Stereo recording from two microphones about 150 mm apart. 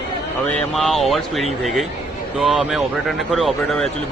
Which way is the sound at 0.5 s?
Centre (ahead or behind).